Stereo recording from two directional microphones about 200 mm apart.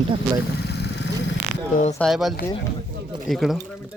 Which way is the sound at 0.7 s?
55° left (ahead or behind).